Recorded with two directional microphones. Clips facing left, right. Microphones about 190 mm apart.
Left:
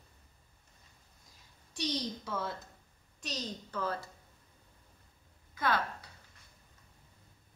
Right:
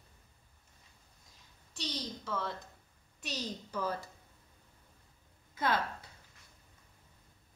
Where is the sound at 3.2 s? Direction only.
10° right (ahead or behind).